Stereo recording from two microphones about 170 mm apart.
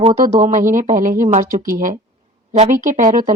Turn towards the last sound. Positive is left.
turn(degrees=-45)  # may be behind; listen again after turning